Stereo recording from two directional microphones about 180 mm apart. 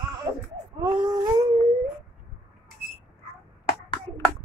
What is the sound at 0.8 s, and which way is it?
Baby cry, 20° right (ahead or behind).